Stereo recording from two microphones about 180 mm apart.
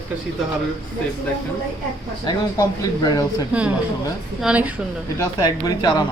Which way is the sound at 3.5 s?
5° right (ahead or behind).